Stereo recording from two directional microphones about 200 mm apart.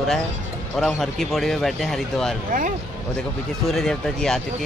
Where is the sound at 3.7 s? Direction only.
Centre (ahead or behind).